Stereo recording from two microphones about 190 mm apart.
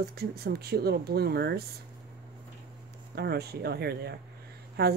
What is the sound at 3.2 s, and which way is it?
Speech, 55° right (ahead or behind).